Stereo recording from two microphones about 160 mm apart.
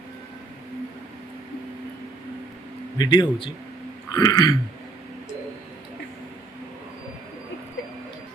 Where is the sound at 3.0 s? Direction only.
30° left (ahead or behind).